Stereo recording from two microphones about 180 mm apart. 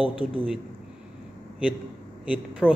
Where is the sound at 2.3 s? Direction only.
5° right (ahead or behind).